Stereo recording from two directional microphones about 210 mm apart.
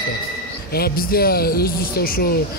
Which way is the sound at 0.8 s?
45° left (ahead or behind).